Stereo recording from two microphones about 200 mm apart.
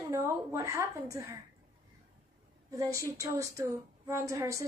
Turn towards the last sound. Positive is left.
turn(degrees=-15)  # may be behind; listen again after turning